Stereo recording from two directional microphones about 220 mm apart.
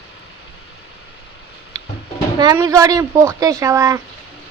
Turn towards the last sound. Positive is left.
turn(degrees=-15)  # may be behind; listen again after turning